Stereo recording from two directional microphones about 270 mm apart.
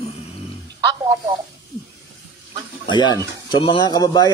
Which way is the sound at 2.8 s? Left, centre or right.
Centre.